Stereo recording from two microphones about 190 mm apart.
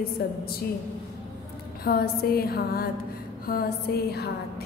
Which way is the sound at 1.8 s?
55° left (ahead or behind).